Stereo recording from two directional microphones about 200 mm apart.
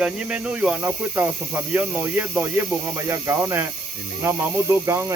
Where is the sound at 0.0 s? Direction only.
5° right (ahead or behind).